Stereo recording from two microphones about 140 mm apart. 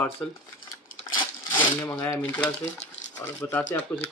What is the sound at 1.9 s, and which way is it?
A man's voice, 20° left (ahead or behind).